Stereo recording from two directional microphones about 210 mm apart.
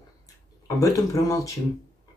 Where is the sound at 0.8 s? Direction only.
15° left (ahead or behind).